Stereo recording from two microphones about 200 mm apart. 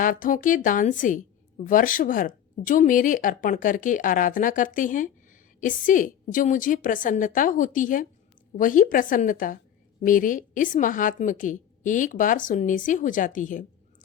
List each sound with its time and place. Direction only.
0.0 s a woman's voice: 40° left (ahead or behind)